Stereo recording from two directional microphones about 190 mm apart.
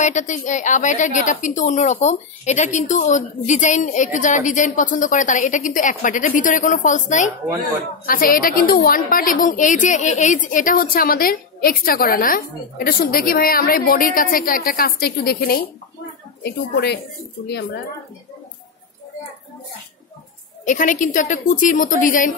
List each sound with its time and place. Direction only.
0.0 s a woman's voice: 40° left (ahead or behind); by 17.7 s 60° left (ahead or behind)
20.6 s a woman's voice: 40° left (ahead or behind)